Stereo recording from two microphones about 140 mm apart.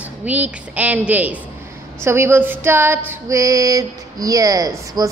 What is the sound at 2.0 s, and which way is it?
Female singing, 20° right (ahead or behind).